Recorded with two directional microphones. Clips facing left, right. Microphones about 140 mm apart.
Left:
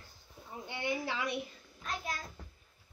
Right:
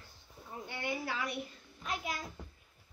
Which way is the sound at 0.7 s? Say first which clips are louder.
Left 2 dB; 20° left (ahead or behind).